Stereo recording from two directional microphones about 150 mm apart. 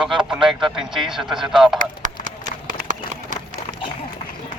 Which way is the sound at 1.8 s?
65° right (ahead or behind).